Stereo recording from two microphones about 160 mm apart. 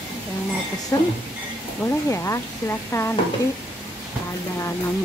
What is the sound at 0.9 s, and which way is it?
Speech, 15° left (ahead or behind).